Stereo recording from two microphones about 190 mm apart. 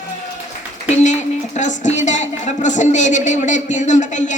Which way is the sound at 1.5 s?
40° left (ahead or behind).